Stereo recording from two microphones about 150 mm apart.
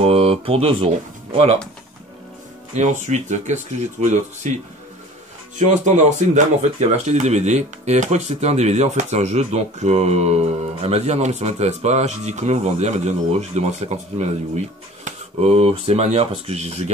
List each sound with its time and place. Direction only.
0.0 s speech: 40° right (ahead or behind)
2.7 s speech: 50° right (ahead or behind)
5.6 s speech: 55° right (ahead or behind)